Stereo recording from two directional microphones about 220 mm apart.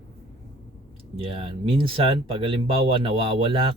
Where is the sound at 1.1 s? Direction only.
25° right (ahead or behind).